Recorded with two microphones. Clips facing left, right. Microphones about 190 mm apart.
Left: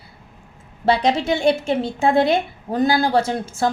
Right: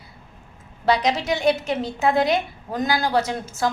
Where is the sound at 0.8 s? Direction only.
30° left (ahead or behind).